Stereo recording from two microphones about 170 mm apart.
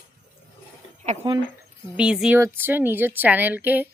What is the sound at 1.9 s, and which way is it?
Speech, 5° right (ahead or behind).